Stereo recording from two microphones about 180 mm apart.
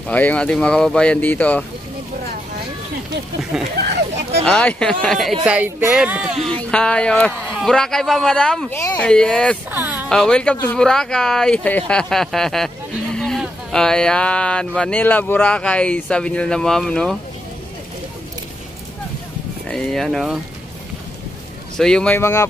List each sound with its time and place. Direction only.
0.1 s speech: 10° left (ahead or behind)
3.7 s speech: 60° right (ahead or behind)
4.5 s speech: 5° left (ahead or behind)
6.5 s speech: 5° left (ahead or behind)
9.0 s speech: 5° left (ahead or behind)
9.7 s speech: 10° right (ahead or behind)
10.0 s speech: 5° left (ahead or behind)
19.7 s speech: centre (ahead or behind)
21.7 s speech: 5° left (ahead or behind)